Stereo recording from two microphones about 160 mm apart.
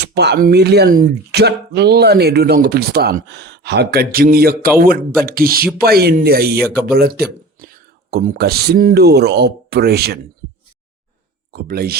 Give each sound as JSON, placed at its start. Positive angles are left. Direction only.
{"t": 0.0, "sound": "speech", "side_deg": -90}
{"t": 11.5, "sound": "speech", "side_deg": -75}